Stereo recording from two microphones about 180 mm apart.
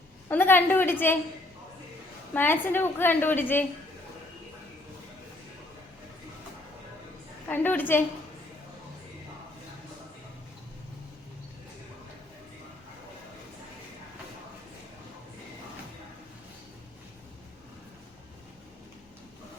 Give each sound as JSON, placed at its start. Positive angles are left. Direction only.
{"t": 0.3, "sound": "a woman's voice", "side_deg": 10}
{"t": 2.3, "sound": "a woman's voice", "side_deg": 10}
{"t": 7.4, "sound": "a woman's voice", "side_deg": 10}